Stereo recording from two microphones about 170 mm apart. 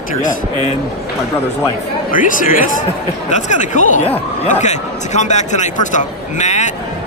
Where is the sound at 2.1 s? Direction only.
50° left (ahead or behind).